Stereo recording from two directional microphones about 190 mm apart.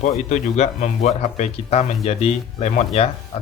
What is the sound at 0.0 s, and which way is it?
Speech, 35° left (ahead or behind).